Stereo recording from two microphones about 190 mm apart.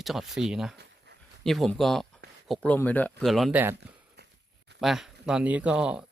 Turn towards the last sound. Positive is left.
turn(degrees=-5)  # may be behind; listen again after turning